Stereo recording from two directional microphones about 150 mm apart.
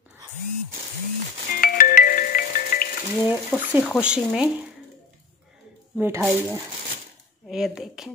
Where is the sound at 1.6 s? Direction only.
70° left (ahead or behind).